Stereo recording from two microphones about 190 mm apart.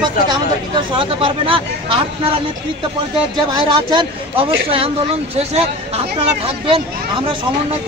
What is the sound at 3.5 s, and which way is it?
A man's voice, 25° right (ahead or behind).